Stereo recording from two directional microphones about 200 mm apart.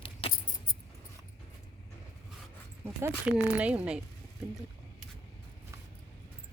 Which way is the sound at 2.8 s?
10° right (ahead or behind).